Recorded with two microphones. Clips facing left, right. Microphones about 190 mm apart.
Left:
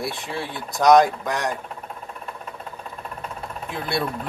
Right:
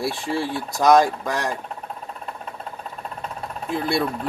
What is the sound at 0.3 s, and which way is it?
Speech, centre (ahead or behind).